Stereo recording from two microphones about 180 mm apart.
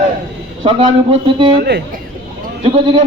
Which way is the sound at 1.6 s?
65° right (ahead or behind).